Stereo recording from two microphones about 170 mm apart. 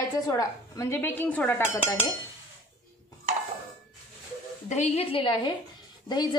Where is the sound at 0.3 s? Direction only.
20° left (ahead or behind).